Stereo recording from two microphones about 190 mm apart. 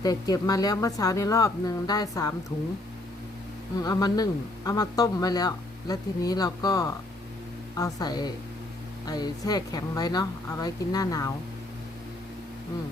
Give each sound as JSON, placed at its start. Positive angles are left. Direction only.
{"t": 0.0, "sound": "speech", "side_deg": 20}
{"t": 3.8, "sound": "speech", "side_deg": 20}